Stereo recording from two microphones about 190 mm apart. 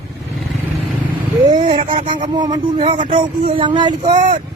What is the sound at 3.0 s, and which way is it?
Speech, 40° right (ahead or behind).